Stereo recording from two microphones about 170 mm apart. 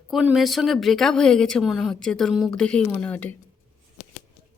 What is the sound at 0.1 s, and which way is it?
A woman's voice, centre (ahead or behind).